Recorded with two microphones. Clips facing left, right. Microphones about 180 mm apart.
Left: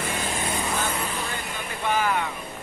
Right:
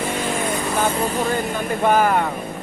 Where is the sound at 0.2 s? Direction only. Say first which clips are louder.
Right 6 dB; 45° right (ahead or behind).